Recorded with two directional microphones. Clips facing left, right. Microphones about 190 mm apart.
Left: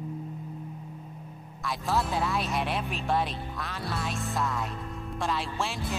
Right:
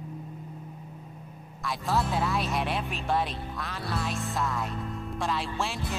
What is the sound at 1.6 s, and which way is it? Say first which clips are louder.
Music: even; centre (ahead or behind).